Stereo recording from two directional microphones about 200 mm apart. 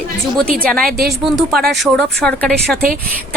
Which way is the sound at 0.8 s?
45° right (ahead or behind).